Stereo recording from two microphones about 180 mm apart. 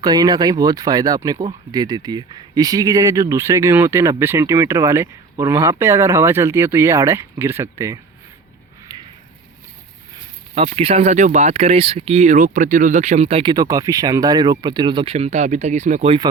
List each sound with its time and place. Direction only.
0.0 s speech: 20° right (ahead or behind)
10.5 s speech: 30° right (ahead or behind)